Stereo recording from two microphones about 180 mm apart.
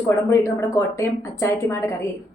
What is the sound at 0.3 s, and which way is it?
A woman's voice, 15° left (ahead or behind).